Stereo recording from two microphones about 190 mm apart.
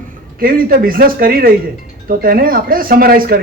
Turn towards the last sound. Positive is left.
turn(degrees=-50)  # may be behind; listen again after turning